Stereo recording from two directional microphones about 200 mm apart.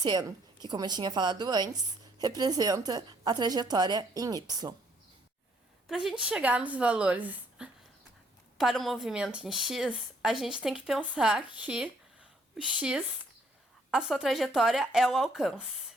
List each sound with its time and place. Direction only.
0.0 s a woman's voice: 20° right (ahead or behind)
5.9 s a woman's voice: centre (ahead or behind)